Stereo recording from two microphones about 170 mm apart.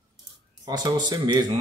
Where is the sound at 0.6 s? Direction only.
25° right (ahead or behind).